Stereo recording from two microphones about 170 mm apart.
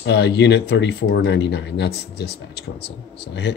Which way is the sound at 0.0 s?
90° left.